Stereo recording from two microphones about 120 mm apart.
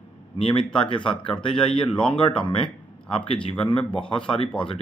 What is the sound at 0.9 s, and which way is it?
Speech, 45° left (ahead or behind).